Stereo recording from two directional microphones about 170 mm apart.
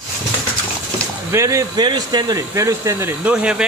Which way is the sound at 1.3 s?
20° right (ahead or behind).